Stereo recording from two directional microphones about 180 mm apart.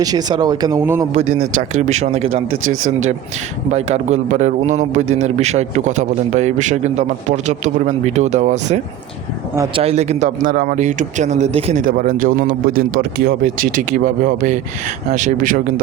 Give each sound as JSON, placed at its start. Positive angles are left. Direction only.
{"t": 0.0, "sound": "speech", "side_deg": -20}
{"t": 1.1, "sound": "a man's voice", "side_deg": -40}